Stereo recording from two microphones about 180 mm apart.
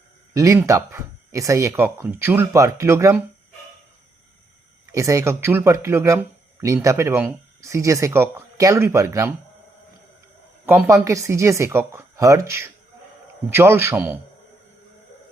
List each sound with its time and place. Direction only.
0.3 s speech: 15° right (ahead or behind)
4.9 s speech: 15° right (ahead or behind)
10.7 s speech: 15° right (ahead or behind)